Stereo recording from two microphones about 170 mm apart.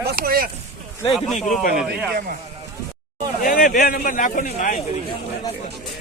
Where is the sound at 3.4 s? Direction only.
55° left (ahead or behind).